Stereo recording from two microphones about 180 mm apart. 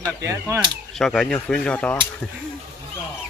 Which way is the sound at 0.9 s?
5° left (ahead or behind).